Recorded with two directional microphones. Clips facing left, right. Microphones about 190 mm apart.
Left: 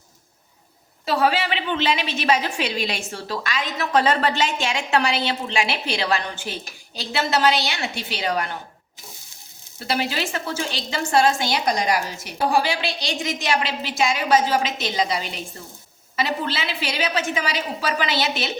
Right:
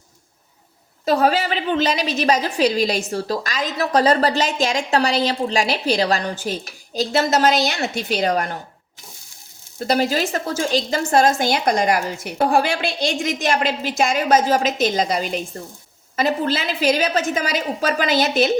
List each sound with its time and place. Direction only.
1.0 s a woman's voice: 45° right (ahead or behind)
9.8 s a woman's voice: 40° right (ahead or behind)